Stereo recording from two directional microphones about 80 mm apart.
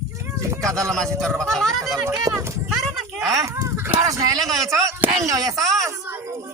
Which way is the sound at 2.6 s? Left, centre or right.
Centre.